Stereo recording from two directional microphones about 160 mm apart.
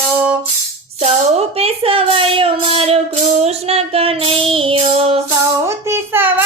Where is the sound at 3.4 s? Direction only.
40° right (ahead or behind).